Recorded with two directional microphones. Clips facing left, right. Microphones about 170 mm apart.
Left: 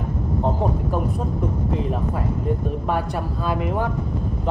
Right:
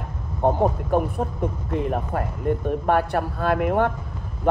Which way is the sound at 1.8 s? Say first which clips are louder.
Even; 60° right (ahead or behind).